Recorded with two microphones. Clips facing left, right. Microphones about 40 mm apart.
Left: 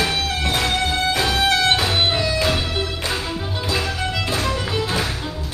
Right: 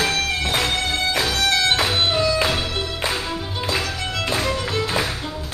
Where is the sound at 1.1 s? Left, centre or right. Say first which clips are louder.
Left 2 dB; centre.